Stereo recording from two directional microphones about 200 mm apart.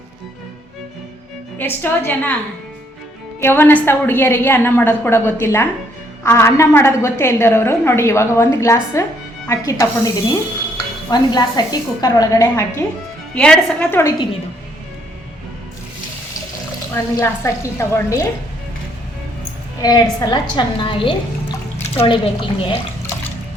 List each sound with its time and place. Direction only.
1.5 s a woman's voice: 10° left (ahead or behind)
3.4 s a woman's voice: 10° left (ahead or behind)
13.3 s a woman's voice: 5° left (ahead or behind)
16.9 s a woman's voice: 15° left (ahead or behind)
19.8 s a woman's voice: 20° left (ahead or behind)